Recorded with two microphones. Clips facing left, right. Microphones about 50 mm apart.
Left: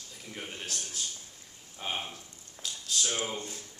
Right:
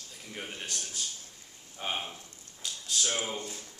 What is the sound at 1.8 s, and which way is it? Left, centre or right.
Speech, centre.